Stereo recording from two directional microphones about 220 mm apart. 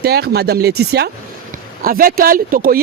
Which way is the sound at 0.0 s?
45° right (ahead or behind).